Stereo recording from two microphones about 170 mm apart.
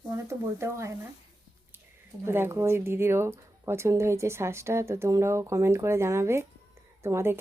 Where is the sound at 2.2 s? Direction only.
15° right (ahead or behind).